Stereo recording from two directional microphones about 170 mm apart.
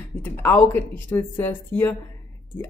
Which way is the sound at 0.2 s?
15° left (ahead or behind).